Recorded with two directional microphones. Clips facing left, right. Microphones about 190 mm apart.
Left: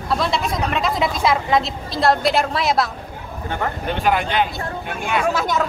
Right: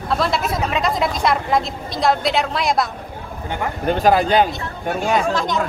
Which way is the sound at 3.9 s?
40° right (ahead or behind).